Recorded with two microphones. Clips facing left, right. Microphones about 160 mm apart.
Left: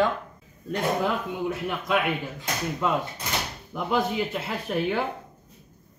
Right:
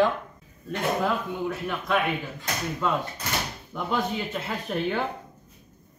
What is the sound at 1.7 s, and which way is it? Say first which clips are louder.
Speech: even; 10° left (ahead or behind).